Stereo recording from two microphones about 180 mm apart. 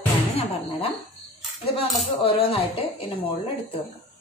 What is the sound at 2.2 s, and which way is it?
A woman's voice, 30° left (ahead or behind).